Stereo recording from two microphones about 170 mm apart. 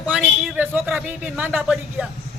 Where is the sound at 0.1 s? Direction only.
5° right (ahead or behind).